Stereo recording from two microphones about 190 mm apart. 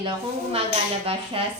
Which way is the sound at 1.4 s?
30° right (ahead or behind).